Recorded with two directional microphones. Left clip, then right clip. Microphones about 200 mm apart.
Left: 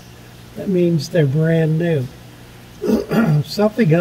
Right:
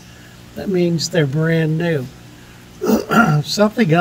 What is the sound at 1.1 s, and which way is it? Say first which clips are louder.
Speech: left 1 dB; 50° right (ahead or behind).